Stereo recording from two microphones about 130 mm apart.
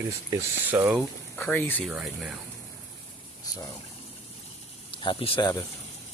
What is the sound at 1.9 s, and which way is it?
Speech, 5° right (ahead or behind).